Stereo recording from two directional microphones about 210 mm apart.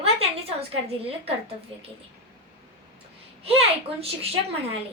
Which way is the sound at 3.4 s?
30° right (ahead or behind).